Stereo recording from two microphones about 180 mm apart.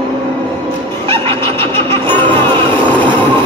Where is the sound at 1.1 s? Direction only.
15° left (ahead or behind).